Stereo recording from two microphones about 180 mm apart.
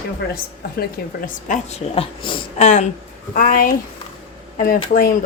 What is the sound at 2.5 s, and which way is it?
Speech, 40° left (ahead or behind).